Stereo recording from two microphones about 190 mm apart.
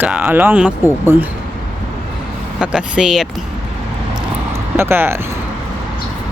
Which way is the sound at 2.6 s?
5° right (ahead or behind).